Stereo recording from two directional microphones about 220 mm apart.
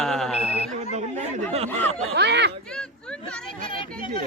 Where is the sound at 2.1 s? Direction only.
50° right (ahead or behind).